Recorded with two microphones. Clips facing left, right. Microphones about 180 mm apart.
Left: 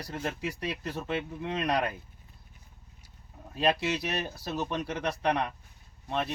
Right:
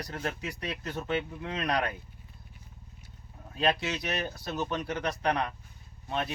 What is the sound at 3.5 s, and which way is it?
Speech, 5° left (ahead or behind).